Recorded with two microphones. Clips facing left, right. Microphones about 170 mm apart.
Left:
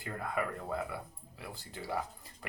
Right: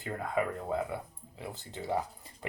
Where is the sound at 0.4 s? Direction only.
25° right (ahead or behind).